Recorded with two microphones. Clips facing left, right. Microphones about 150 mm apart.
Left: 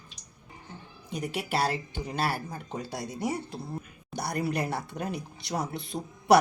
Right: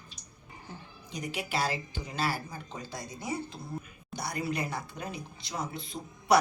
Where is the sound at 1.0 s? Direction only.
55° left (ahead or behind).